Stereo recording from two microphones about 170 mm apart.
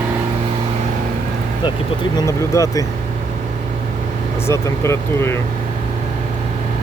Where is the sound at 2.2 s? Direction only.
20° left (ahead or behind).